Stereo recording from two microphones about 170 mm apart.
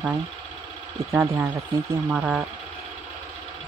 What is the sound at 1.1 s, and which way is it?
Speech, 15° right (ahead or behind).